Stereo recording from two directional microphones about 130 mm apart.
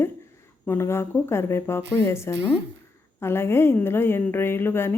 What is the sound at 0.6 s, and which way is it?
A woman's voice, 20° left (ahead or behind).